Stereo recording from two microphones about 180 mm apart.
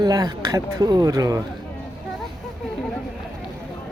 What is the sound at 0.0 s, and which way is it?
Speech, 20° right (ahead or behind).